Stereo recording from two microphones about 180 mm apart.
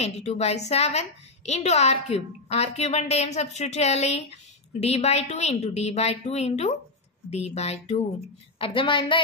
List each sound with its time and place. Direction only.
0.0 s a woman's voice: 35° left (ahead or behind)